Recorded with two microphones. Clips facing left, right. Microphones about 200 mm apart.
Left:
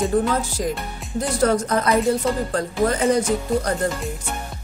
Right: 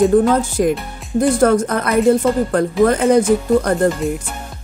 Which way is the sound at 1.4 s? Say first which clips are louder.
Right 5 dB; 55° right (ahead or behind).